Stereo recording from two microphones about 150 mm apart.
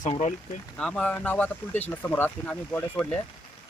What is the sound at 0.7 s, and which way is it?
Speech, 5° left (ahead or behind).